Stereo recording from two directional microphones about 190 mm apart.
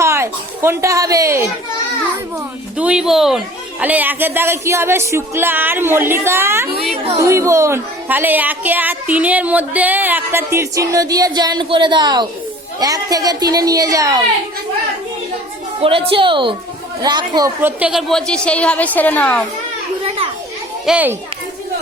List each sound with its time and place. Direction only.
0.0 s a woman's voice: 15° right (ahead or behind)
2.7 s speech: 5° right (ahead or behind)
6.9 s speech: 30° right (ahead or behind)
7.2 s a woman's voice: 15° right (ahead or behind)
15.8 s a woman's voice: 30° right (ahead or behind); by 19.5 s 10° left (ahead or behind)
20.8 s speech: 5° right (ahead or behind)